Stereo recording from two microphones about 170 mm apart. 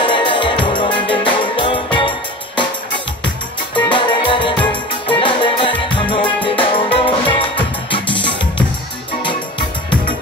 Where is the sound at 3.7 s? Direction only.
30° left (ahead or behind).